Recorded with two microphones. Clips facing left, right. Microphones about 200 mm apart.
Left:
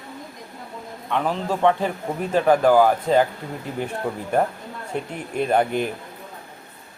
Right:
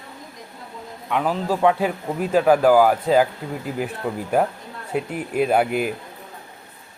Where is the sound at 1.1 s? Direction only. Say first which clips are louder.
Right 2 dB; 5° right (ahead or behind).